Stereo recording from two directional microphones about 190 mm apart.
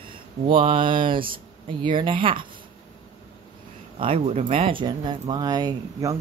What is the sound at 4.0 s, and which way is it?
Speech, 30° right (ahead or behind).